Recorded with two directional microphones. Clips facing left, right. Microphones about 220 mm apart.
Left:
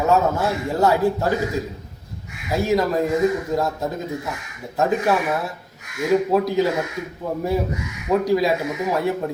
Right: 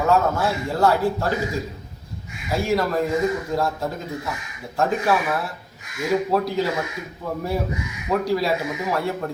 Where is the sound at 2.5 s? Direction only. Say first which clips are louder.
Left 2 dB; 20° left (ahead or behind).